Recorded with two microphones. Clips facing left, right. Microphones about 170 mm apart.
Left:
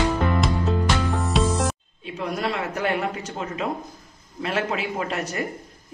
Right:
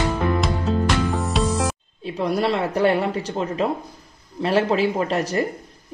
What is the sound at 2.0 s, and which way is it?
Speech, 35° right (ahead or behind).